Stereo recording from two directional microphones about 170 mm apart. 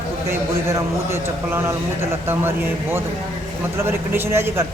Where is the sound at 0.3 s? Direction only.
15° right (ahead or behind).